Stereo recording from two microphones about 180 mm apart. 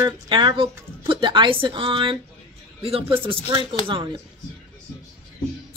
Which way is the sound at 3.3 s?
30° right (ahead or behind).